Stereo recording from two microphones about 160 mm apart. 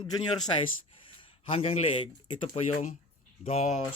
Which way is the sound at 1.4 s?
35° left (ahead or behind).